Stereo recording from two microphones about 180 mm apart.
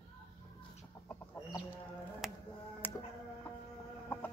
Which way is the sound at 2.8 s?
10° left (ahead or behind).